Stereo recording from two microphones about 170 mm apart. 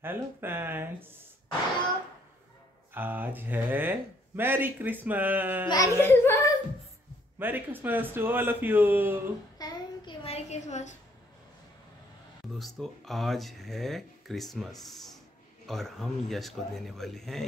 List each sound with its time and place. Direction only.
0.0 s speech: 15° right (ahead or behind)
2.9 s speech: 10° right (ahead or behind)
5.7 s speech: 15° left (ahead or behind)
7.3 s speech: 10° right (ahead or behind)
9.6 s child singing: 25° left (ahead or behind)
10.2 s a sound: 40° left (ahead or behind)
12.5 s speech: centre (ahead or behind)